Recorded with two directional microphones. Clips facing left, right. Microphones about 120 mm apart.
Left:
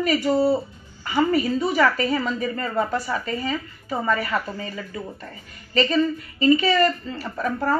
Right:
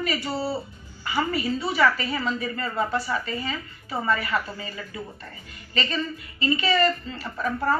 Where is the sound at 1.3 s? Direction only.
45° left (ahead or behind).